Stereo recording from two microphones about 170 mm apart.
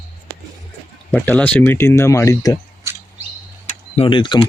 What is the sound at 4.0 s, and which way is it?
Speech, 30° left (ahead or behind).